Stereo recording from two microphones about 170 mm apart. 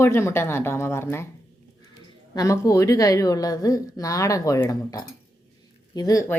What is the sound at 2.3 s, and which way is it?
A woman's voice, 20° left (ahead or behind).